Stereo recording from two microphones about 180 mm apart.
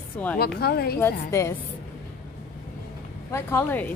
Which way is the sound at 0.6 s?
60° left (ahead or behind).